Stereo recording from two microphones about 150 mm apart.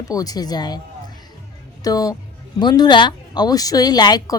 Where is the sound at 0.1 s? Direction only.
25° left (ahead or behind).